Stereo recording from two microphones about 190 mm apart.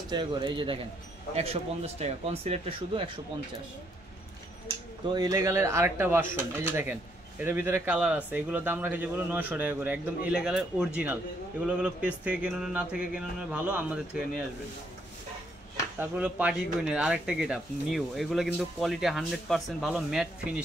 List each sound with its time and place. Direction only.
0.1 s speech: 25° right (ahead or behind)
5.1 s speech: 20° right (ahead or behind)
16.0 s speech: 5° right (ahead or behind)